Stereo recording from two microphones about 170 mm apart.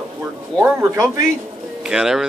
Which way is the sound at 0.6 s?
15° right (ahead or behind).